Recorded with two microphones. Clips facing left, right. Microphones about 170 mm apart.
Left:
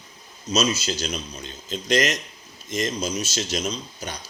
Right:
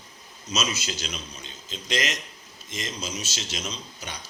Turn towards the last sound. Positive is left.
turn(degrees=40)  # may be behind; listen again after turning